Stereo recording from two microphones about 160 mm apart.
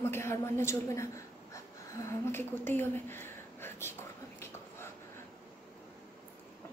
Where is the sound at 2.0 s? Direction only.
15° left (ahead or behind).